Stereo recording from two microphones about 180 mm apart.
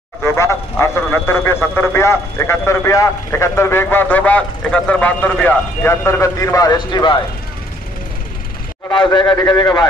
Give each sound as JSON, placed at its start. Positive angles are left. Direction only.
{"t": 0.2, "sound": "speech", "side_deg": 15}
{"t": 8.8, "sound": "a man's voice", "side_deg": 25}